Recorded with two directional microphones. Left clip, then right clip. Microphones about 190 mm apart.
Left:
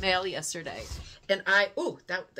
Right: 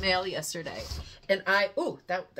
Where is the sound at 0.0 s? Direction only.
20° left (ahead or behind).